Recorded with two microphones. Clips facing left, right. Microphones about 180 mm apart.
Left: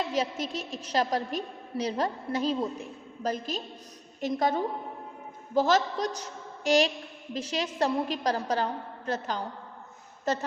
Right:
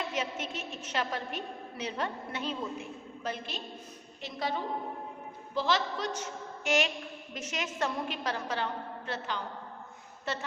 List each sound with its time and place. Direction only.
0.1 s a woman's voice: 35° left (ahead or behind)